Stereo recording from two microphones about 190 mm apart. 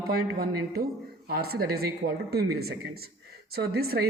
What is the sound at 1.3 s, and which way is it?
A woman's voice, 55° right (ahead or behind).